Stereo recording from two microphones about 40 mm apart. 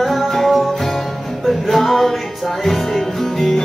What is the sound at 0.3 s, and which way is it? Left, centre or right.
Music, centre.